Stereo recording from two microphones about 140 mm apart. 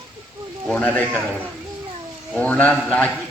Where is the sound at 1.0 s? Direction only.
15° right (ahead or behind).